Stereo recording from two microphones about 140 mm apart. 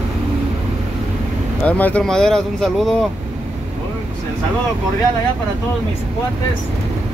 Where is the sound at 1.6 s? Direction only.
10° left (ahead or behind).